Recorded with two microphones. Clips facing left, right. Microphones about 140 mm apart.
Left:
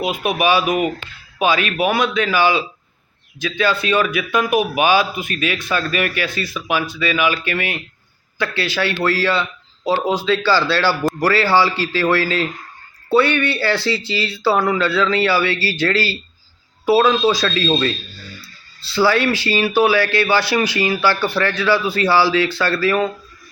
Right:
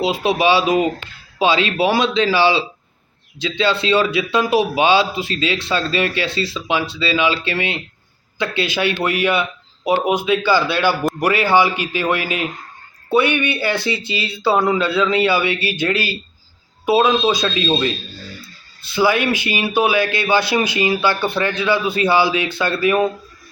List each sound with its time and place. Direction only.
0.0 s speech: 30° right (ahead or behind)